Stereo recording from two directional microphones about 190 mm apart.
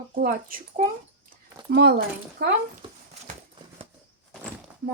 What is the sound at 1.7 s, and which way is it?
Speech, 60° right (ahead or behind).